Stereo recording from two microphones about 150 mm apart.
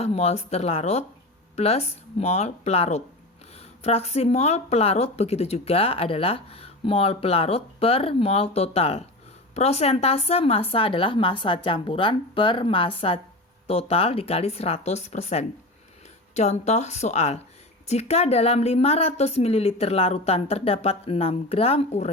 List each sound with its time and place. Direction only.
0.0 s speech: 45° left (ahead or behind)